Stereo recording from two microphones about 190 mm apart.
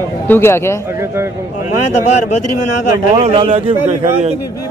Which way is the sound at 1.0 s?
15° right (ahead or behind).